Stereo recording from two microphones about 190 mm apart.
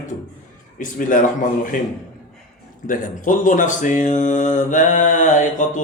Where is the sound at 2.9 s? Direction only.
45° left (ahead or behind).